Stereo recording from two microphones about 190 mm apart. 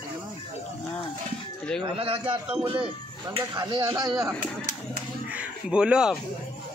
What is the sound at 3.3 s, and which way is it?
Speech, 25° right (ahead or behind).